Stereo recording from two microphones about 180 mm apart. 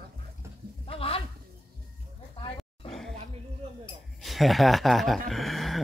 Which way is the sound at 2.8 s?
30° left (ahead or behind).